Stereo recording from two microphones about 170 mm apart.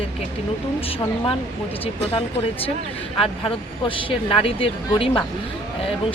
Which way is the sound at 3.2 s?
30° left (ahead or behind).